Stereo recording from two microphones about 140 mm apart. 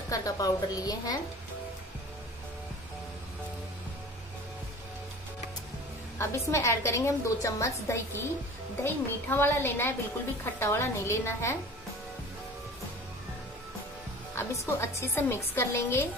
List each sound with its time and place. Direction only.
0.1 s a woman's voice: 25° left (ahead or behind)
6.1 s a woman's voice: 20° left (ahead or behind)
14.3 s a woman's voice: 20° left (ahead or behind)